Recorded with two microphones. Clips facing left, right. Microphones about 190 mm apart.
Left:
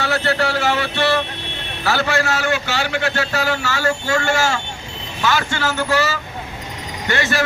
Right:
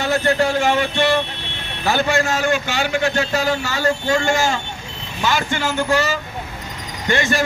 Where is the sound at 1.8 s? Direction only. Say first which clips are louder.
Right 1 dB; 20° right (ahead or behind).